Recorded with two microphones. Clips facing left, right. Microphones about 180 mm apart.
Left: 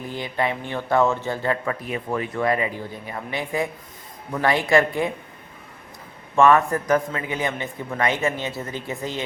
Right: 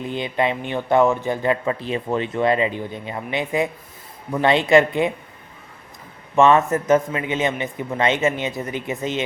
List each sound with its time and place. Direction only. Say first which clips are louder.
0.0 s speech: right 3 dB; 20° right (ahead or behind)
6.3 s speech: right 2 dB; 20° right (ahead or behind)